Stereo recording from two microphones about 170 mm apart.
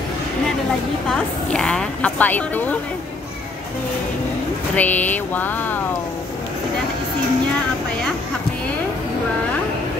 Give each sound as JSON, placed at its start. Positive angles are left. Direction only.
{"t": 1.0, "sound": "a woman's voice", "side_deg": 5}
{"t": 4.7, "sound": "a woman's voice", "side_deg": 10}